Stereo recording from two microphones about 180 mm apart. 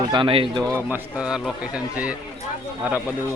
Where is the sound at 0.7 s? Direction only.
10° right (ahead or behind).